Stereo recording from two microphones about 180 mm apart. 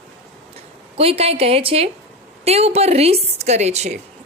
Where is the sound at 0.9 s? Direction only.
30° right (ahead or behind).